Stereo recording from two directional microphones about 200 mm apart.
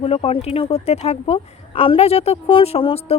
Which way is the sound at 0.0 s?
30° left (ahead or behind).